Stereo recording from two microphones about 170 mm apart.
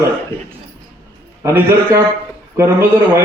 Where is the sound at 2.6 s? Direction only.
15° right (ahead or behind).